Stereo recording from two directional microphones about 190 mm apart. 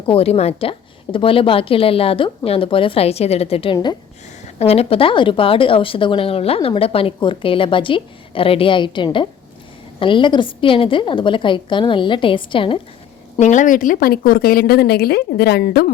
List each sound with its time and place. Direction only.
0.0 s a woman's voice: 30° left (ahead or behind)
13.3 s speech: 40° left (ahead or behind); by 15.9 s 55° left (ahead or behind)